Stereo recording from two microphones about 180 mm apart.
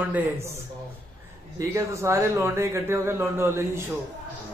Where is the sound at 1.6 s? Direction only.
20° right (ahead or behind).